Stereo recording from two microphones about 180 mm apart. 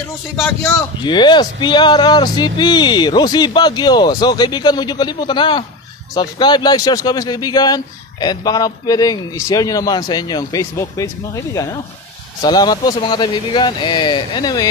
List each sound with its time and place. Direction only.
0.4 s a man's voice: 10° left (ahead or behind)
1.0 s speech: 25° left (ahead or behind)